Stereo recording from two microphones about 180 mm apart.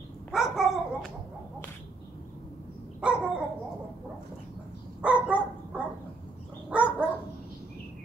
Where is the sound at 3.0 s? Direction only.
5° right (ahead or behind).